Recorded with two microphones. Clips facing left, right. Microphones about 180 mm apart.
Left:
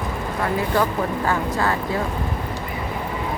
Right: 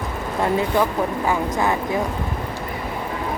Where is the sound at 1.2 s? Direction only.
15° right (ahead or behind).